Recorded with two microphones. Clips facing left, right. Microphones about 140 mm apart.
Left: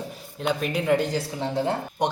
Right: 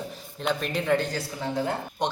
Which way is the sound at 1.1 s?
25° left (ahead or behind).